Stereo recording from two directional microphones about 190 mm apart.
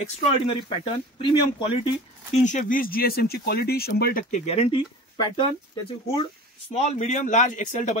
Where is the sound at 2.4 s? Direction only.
45° left (ahead or behind).